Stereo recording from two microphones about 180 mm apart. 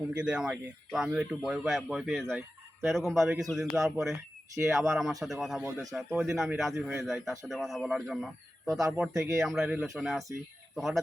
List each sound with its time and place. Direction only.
0.2 s speech: 5° right (ahead or behind)